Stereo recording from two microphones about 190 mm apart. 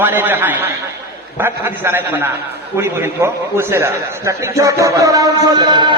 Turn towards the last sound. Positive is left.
turn(degrees=-25)  # may be behind; listen again after turning